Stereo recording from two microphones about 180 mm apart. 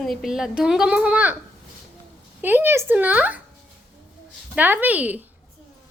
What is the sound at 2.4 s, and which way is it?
Speech, 10° right (ahead or behind).